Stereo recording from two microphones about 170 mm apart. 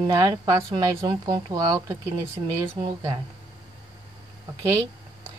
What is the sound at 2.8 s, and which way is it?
Speech, 30° right (ahead or behind).